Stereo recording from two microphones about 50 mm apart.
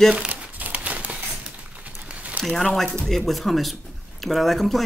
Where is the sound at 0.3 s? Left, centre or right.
Right.